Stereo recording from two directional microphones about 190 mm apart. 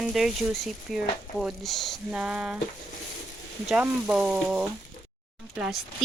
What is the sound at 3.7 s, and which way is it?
Speech, 5° right (ahead or behind).